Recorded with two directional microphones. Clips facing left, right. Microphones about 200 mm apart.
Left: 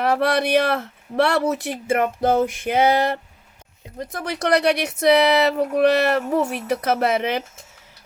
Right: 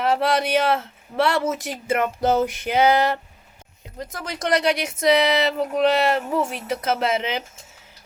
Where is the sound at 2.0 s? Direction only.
30° left (ahead or behind).